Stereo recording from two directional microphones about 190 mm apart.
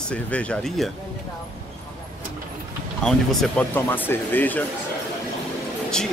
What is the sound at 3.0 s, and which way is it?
Speech, 5° left (ahead or behind).